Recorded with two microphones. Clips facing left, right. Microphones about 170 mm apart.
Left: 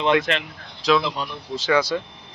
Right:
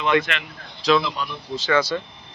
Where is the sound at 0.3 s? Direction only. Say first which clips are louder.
Left 5 dB; 35° left (ahead or behind).